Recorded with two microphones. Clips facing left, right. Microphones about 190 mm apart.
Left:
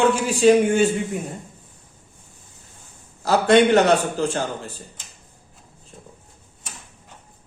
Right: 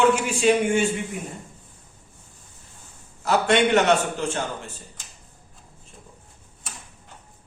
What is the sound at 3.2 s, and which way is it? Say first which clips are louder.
A man's voice: left 4 dB; 35° left (ahead or behind).